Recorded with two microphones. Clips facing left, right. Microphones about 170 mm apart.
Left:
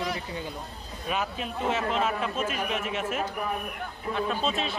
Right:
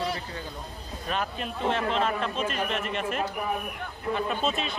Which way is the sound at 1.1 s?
5° left (ahead or behind).